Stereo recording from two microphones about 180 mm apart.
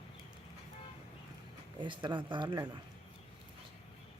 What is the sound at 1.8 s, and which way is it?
Speech, 25° right (ahead or behind).